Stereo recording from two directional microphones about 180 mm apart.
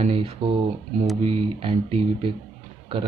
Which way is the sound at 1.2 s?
30° right (ahead or behind).